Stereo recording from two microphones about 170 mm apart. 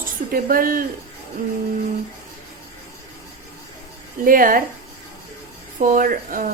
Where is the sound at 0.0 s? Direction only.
55° right (ahead or behind).